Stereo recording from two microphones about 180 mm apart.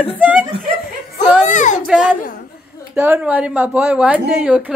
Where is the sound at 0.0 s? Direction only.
10° right (ahead or behind).